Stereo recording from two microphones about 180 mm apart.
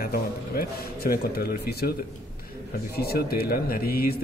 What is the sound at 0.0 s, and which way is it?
A man's voice, 55° left (ahead or behind).